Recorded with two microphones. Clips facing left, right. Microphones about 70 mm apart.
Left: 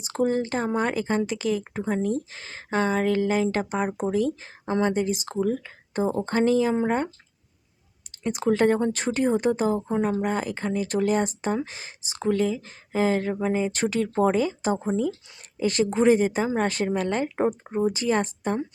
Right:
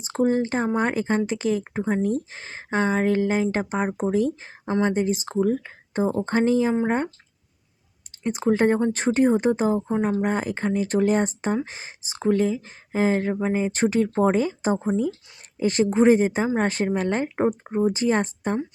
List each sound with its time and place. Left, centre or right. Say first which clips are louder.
0.0 s speech: right 2 dB; right
8.2 s speech: right 1 dB; right